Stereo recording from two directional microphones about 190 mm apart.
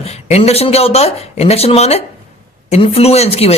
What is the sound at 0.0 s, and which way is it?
A man's voice, 35° left (ahead or behind).